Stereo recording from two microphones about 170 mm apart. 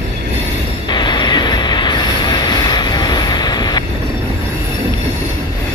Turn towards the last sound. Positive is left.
turn(degrees=25)  # may be behind; listen again after turning